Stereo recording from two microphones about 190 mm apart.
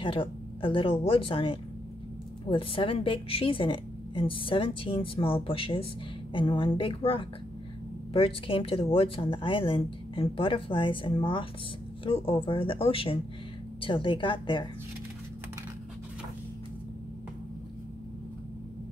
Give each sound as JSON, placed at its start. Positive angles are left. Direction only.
{"t": 0.0, "sound": "a woman's voice", "side_deg": 30}